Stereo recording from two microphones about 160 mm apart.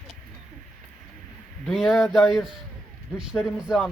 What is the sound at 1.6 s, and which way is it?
Speech, centre (ahead or behind).